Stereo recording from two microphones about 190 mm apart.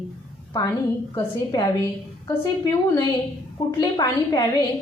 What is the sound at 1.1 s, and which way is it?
A woman's voice, 20° left (ahead or behind).